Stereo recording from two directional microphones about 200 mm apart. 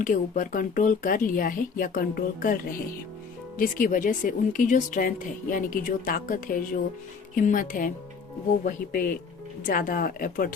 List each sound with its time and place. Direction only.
0.0 s a woman's voice: 40° left (ahead or behind)
3.6 s a woman's voice: 45° left (ahead or behind)